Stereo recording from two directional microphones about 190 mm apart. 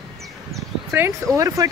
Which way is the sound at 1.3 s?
15° right (ahead or behind).